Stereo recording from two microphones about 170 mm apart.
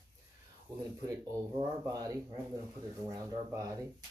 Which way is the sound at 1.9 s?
20° right (ahead or behind).